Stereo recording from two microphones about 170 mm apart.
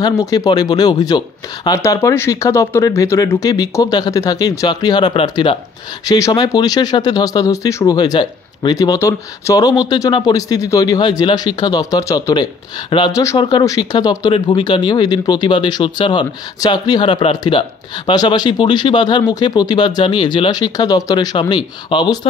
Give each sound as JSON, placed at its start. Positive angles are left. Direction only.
{"t": 0.0, "sound": "speech", "side_deg": 20}
{"t": 12.9, "sound": "speech", "side_deg": 30}